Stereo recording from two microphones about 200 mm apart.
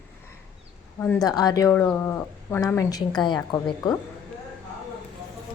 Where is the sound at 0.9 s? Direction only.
10° left (ahead or behind).